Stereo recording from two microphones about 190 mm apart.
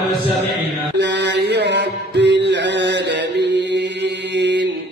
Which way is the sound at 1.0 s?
65° right (ahead or behind).